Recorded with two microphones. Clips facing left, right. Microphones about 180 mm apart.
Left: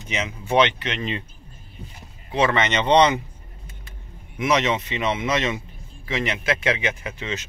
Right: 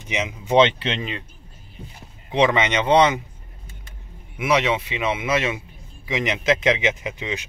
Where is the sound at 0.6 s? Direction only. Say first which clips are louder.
Right 3 dB; 25° right (ahead or behind).